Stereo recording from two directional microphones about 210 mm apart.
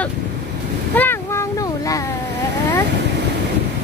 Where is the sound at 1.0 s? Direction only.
10° left (ahead or behind).